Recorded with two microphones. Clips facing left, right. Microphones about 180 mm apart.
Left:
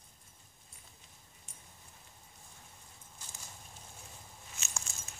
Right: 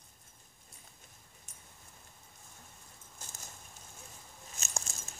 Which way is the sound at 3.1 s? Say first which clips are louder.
Right 2 dB; 45° right (ahead or behind).